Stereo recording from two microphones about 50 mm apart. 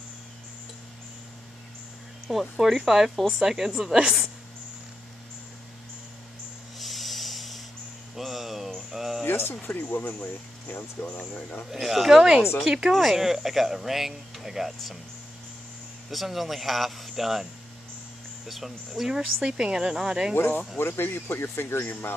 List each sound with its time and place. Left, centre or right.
2.3 s speech: centre
6.8 s rub: centre
8.2 s a sound: centre
9.2 s music: left
9.6 s speech: left
11.7 s speech: centre
16.1 s speech: centre
18.5 s speech: centre
20.3 s speech: left